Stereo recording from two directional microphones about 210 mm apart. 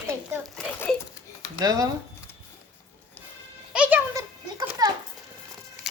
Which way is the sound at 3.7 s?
5° right (ahead or behind).